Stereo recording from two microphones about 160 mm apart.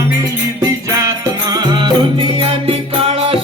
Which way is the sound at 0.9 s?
20° right (ahead or behind).